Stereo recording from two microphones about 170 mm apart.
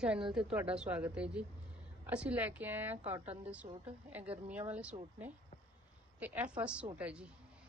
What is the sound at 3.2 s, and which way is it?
Speech, 35° right (ahead or behind).